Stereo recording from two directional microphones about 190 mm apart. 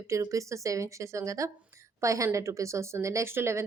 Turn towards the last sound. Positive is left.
turn(degrees=-15)  # may be behind; listen again after turning